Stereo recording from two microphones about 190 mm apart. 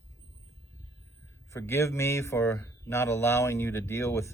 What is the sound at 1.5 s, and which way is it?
Speech, 15° left (ahead or behind).